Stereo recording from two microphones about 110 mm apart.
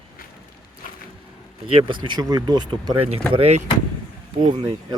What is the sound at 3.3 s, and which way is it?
Speech, 70° right (ahead or behind).